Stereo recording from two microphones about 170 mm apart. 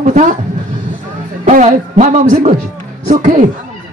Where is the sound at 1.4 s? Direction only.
45° right (ahead or behind).